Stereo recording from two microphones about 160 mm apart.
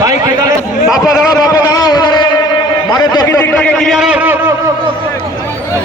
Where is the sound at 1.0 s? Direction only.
25° left (ahead or behind).